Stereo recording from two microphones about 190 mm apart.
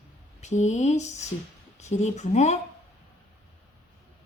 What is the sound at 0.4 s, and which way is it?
A woman's voice, 40° left (ahead or behind).